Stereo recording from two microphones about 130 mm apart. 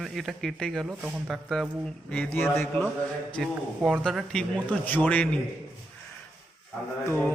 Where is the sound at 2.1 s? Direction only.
15° left (ahead or behind).